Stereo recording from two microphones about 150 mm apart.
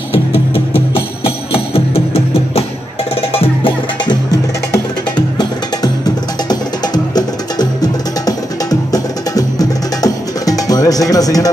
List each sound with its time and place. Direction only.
0.9 s music: 40° left (ahead or behind)